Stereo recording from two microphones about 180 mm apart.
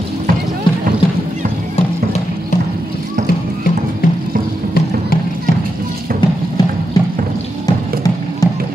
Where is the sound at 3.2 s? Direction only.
60° left (ahead or behind).